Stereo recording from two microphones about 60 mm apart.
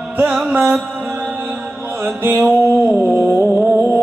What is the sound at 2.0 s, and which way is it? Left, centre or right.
Mantra, right.